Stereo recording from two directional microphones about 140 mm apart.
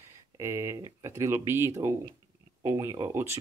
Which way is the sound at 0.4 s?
20° right (ahead or behind).